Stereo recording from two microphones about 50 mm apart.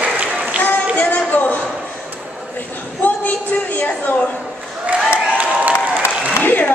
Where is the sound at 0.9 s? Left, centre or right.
Left.